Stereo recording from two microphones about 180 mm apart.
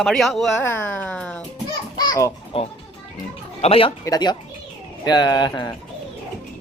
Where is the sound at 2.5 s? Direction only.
30° left (ahead or behind).